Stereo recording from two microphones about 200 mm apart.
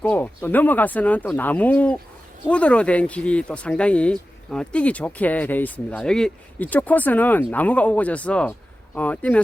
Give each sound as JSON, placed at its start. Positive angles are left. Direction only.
{"t": 0.0, "sound": "speech", "side_deg": 10}